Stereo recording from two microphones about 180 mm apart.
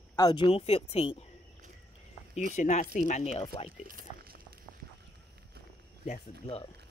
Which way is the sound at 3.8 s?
55° right (ahead or behind).